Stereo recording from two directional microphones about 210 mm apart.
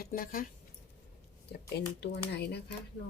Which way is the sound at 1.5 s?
50° left (ahead or behind).